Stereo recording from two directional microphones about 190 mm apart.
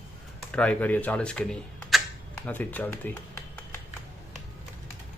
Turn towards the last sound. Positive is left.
turn(degrees=10)  # may be behind; listen again after turning